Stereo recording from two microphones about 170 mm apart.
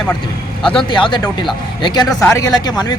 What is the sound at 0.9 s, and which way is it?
Speech, 30° left (ahead or behind).